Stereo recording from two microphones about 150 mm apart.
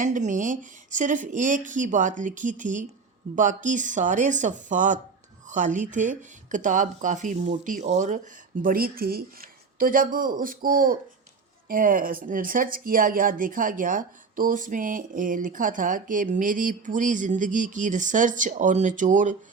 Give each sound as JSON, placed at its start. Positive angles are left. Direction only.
{"t": 0.0, "sound": "a woman's voice", "side_deg": -55}